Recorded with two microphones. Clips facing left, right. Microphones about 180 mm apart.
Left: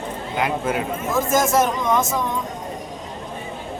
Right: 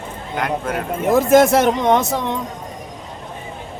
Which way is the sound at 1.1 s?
65° right (ahead or behind).